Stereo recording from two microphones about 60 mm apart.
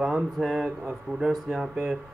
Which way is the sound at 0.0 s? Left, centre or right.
Centre.